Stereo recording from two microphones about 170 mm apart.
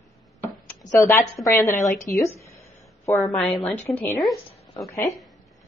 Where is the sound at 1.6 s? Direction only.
Centre (ahead or behind).